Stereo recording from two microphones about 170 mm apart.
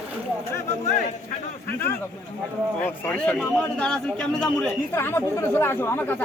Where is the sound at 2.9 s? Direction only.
10° left (ahead or behind).